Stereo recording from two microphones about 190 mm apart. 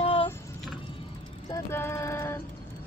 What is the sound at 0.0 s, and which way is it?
Vehicle, 30° left (ahead or behind).